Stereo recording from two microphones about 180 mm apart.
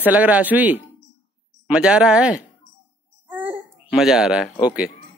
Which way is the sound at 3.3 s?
10° right (ahead or behind).